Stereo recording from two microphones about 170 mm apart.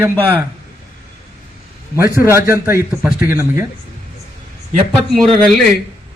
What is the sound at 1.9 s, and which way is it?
A man's voice, 15° right (ahead or behind).